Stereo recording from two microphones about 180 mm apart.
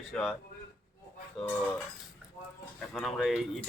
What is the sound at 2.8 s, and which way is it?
Speech, 5° left (ahead or behind).